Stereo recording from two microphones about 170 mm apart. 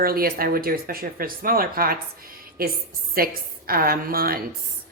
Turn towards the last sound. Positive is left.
turn(degrees=-60)  # may be behind; listen again after turning